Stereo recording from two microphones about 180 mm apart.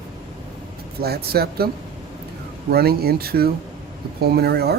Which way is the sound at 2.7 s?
60° right (ahead or behind).